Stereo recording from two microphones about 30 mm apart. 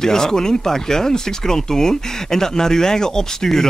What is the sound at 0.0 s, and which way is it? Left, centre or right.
Speech, centre.